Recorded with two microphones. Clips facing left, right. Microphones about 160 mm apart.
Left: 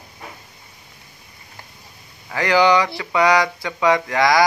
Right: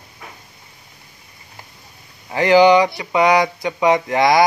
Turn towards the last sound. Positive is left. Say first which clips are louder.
# right 2 dB
turn(degrees=-20)  # may be behind; listen again after turning